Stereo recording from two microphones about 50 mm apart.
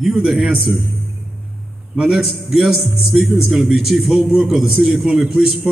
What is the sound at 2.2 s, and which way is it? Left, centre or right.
A man's voice, centre.